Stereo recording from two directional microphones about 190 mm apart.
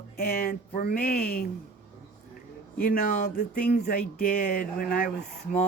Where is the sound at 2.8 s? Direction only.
50° left (ahead or behind).